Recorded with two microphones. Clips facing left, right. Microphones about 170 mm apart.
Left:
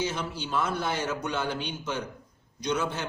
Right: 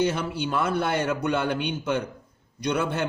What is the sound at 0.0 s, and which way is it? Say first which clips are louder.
A man's voice: right 6 dB; 55° right (ahead or behind).